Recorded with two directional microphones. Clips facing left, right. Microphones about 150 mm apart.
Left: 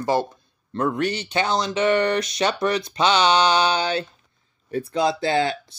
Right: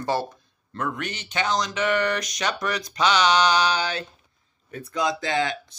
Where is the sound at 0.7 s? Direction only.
30° left (ahead or behind).